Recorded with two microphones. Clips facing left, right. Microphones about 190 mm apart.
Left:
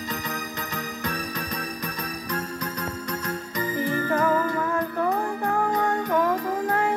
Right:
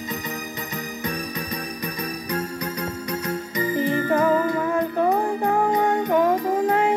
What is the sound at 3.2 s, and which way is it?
Music, 20° right (ahead or behind).